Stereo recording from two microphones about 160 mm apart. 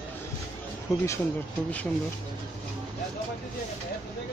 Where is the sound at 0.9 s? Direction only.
15° left (ahead or behind).